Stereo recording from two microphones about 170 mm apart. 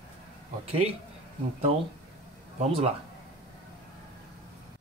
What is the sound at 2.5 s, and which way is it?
Speech, 40° right (ahead or behind).